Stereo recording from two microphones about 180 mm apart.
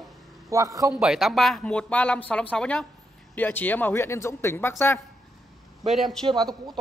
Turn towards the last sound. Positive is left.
turn(degrees=-20)  # may be behind; listen again after turning